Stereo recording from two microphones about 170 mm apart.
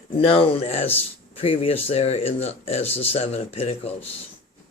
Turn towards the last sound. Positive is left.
turn(degrees=35)  # may be behind; listen again after turning